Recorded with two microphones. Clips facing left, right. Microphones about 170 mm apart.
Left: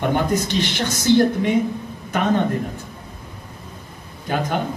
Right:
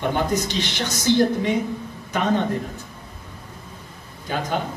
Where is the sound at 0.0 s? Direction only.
50° left (ahead or behind).